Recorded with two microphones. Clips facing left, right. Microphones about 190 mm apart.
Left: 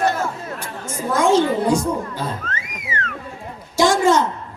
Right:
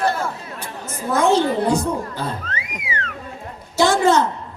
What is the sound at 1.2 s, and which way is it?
Speech, 10° left (ahead or behind).